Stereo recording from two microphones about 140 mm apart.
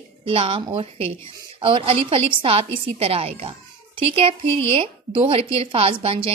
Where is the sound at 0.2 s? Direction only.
40° right (ahead or behind).